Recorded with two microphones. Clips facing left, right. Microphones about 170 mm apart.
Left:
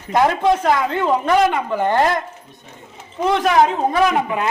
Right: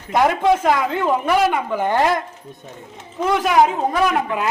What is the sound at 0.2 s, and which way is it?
Speech, 5° right (ahead or behind).